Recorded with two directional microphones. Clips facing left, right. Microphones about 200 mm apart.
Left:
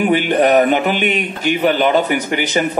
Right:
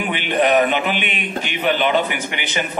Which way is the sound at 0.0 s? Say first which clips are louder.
Left 6 dB; 40° left (ahead or behind).